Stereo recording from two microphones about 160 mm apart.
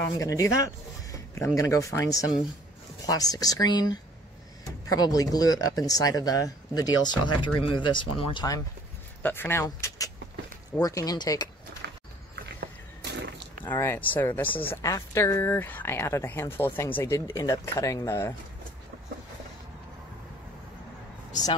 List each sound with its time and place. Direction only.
0.0 s speech: 20° left (ahead or behind)
9.2 s speech: 15° left (ahead or behind)
11.8 s horse: 90° right
12.5 s a sound: 90° right
13.7 s speech: 10° left (ahead or behind)